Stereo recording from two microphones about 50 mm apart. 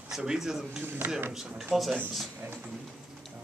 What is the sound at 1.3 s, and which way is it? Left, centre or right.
Speech, centre.